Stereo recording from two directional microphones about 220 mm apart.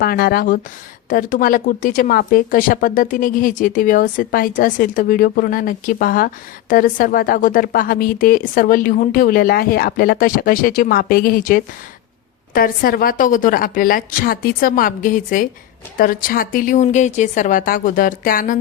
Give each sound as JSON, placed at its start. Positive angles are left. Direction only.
{"t": 0.0, "sound": "speech", "side_deg": 45}